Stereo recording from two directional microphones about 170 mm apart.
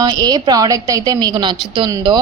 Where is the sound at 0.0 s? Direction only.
25° right (ahead or behind).